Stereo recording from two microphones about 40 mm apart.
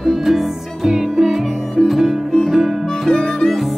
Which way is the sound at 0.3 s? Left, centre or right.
Centre.